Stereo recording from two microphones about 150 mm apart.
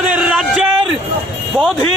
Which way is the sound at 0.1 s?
10° right (ahead or behind).